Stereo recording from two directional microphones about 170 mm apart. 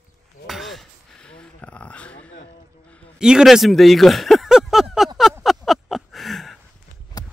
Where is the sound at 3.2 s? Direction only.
5° right (ahead or behind).